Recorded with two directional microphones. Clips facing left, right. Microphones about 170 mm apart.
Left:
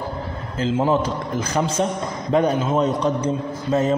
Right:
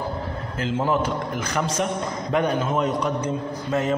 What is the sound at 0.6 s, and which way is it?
Speech, 25° left (ahead or behind).